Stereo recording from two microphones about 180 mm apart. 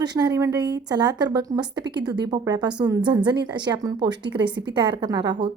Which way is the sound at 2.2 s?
20° right (ahead or behind).